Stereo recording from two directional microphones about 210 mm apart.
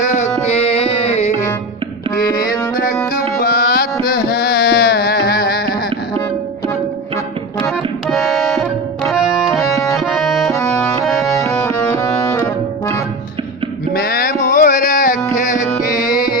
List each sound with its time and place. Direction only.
0.0 s music: 35° left (ahead or behind)
3.4 s music: 45° left (ahead or behind)
8.1 s tabla: centre (ahead or behind)
9.5 s music: 15° left (ahead or behind)
9.9 s accordion: centre (ahead or behind)
11.0 s music: centre (ahead or behind)
11.3 s music: 15° left (ahead or behind)
13.9 s music: 45° left (ahead or behind)